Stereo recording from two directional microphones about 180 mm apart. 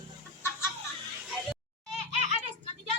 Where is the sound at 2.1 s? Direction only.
40° right (ahead or behind).